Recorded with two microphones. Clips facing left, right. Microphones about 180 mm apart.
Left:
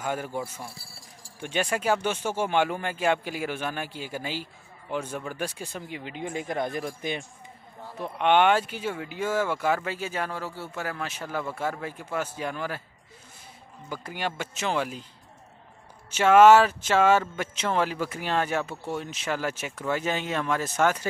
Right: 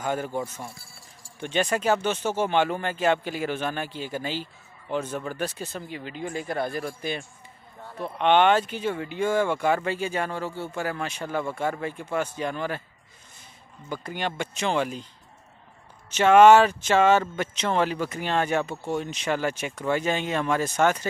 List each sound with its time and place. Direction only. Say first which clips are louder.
0.0 s speech: right 3 dB; 10° left (ahead or behind)
7.9 s speech: right 1 dB; 5° left (ahead or behind)
13.8 s speech: right 2 dB; 5° left (ahead or behind)
16.1 s speech: right 1 dB; 5° left (ahead or behind)